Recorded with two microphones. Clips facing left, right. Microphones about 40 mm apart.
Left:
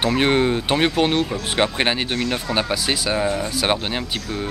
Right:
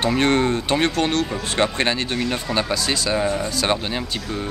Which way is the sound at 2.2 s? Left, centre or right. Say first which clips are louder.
Left 1 dB; centre.